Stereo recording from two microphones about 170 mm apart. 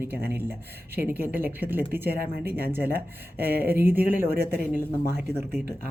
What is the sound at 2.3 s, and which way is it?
Speech, 65° right (ahead or behind).